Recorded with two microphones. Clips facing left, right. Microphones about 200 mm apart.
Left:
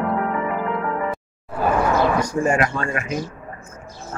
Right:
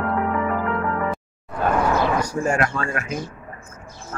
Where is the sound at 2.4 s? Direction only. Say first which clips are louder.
Left 2 dB; 5° left (ahead or behind).